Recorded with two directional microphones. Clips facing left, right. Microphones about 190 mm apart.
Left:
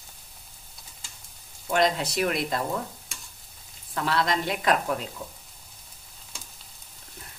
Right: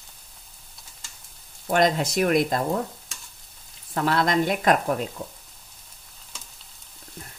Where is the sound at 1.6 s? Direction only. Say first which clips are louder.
Right 3 dB; 50° right (ahead or behind).